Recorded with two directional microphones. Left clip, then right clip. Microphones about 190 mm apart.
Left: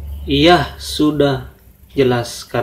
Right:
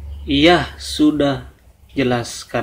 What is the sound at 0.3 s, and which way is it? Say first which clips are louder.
A man's voice: left 2 dB; 30° right (ahead or behind).